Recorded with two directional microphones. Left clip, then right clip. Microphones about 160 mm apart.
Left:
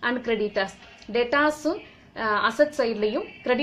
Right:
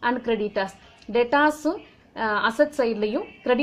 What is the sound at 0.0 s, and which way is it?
A woman's voice, 25° right (ahead or behind).